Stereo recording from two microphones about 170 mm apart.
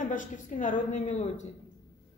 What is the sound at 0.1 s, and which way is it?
A woman's voice, 50° left (ahead or behind).